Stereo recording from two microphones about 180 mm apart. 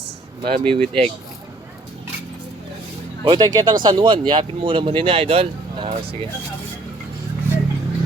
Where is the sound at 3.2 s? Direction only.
25° right (ahead or behind).